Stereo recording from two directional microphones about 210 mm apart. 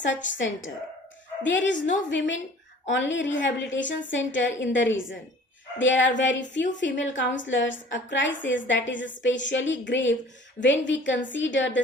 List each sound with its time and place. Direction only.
0.0 s a woman's voice: 60° left (ahead or behind)